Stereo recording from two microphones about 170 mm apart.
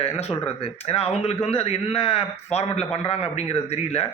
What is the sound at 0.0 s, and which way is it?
A man's voice, 35° left (ahead or behind).